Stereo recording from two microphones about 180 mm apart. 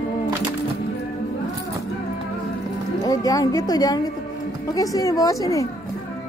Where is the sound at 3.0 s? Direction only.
20° left (ahead or behind).